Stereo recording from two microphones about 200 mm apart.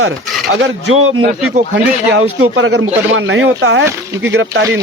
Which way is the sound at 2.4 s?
75° right (ahead or behind).